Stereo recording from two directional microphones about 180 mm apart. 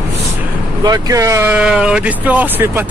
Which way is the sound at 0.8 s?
20° right (ahead or behind).